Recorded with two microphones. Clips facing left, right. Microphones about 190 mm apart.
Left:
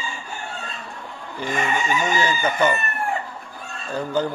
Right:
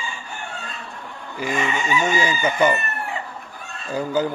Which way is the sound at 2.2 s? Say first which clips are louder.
Even; 10° right (ahead or behind).